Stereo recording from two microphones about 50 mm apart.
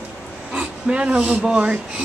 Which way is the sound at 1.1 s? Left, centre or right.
Right.